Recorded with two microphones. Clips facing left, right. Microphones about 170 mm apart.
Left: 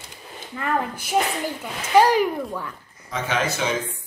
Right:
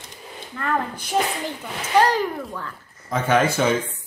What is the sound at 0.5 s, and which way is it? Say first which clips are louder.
Speech: even; 10° left (ahead or behind).